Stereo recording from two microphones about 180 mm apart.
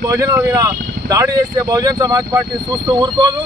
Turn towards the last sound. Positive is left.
turn(degrees=-25)  # may be behind; listen again after turning